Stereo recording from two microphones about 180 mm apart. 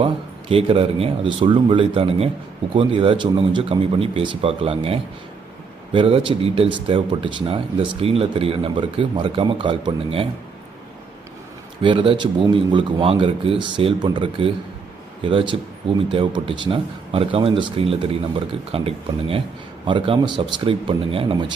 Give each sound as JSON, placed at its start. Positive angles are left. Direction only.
{"t": 0.0, "sound": "speech", "side_deg": -30}
{"t": 11.8, "sound": "speech", "side_deg": -30}